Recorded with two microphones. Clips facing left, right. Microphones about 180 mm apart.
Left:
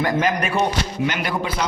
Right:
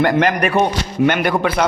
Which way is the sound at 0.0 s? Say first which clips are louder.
Right 5 dB; 65° right (ahead or behind).